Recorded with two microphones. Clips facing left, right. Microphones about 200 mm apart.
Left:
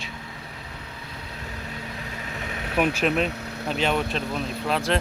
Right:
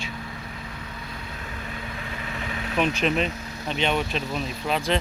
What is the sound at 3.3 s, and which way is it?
Vehicle, 65° left (ahead or behind).